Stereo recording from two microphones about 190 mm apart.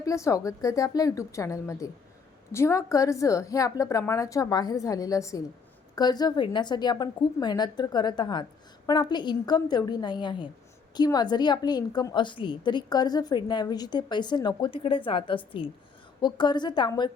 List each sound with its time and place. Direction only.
0.0 s a woman's voice: 15° left (ahead or behind)